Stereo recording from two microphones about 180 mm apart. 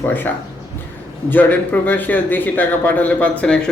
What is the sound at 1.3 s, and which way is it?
A man's voice, 10° left (ahead or behind).